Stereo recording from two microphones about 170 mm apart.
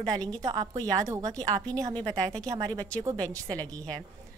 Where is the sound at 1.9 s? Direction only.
5° left (ahead or behind).